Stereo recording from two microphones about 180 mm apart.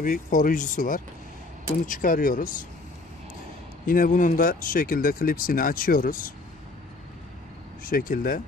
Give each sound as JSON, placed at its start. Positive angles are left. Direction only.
{"t": 0.0, "sound": "speech", "side_deg": 50}
{"t": 3.8, "sound": "speech", "side_deg": 50}
{"t": 7.8, "sound": "speech", "side_deg": 50}